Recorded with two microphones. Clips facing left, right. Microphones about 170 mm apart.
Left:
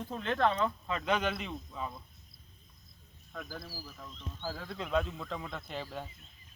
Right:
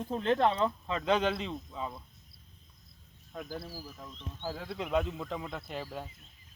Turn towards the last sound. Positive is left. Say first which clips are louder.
# right 1 dB
turn(degrees=-5)  # may be behind; listen again after turning